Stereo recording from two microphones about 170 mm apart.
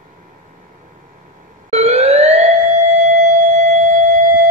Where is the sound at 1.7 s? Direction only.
35° right (ahead or behind).